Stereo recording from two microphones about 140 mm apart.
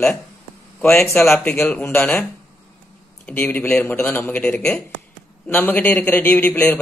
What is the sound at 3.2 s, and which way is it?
A man's voice, 10° left (ahead or behind).